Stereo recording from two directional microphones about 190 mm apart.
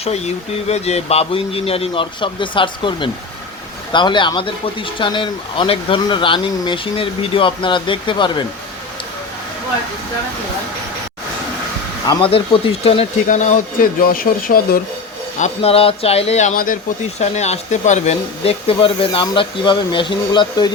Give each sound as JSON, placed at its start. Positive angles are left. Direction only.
{"t": 0.7, "sound": "a man's voice", "side_deg": 35}
{"t": 12.0, "sound": "a man's voice", "side_deg": 30}
{"t": 15.4, "sound": "a man's voice", "side_deg": 35}